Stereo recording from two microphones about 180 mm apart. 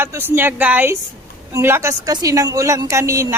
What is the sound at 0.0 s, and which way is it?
A woman's voice, 10° right (ahead or behind).